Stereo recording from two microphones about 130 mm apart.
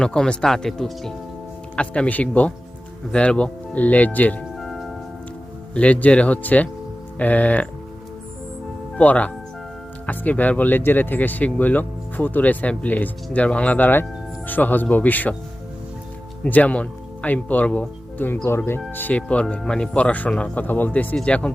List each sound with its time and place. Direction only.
0.0 s speech: 5° left (ahead or behind)
4.5 s music: centre (ahead or behind)
5.7 s speech: 10° left (ahead or behind)
9.0 s speech: 10° left (ahead or behind)
16.4 s speech: 10° left (ahead or behind)